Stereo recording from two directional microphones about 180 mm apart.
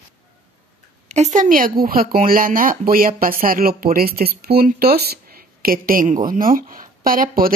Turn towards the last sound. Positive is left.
turn(degrees=-50)  # may be behind; listen again after turning